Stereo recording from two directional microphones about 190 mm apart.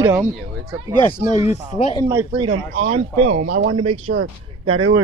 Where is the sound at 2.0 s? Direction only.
20° right (ahead or behind).